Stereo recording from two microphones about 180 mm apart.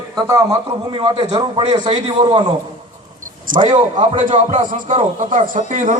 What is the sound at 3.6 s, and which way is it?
A man's voice, 30° right (ahead or behind).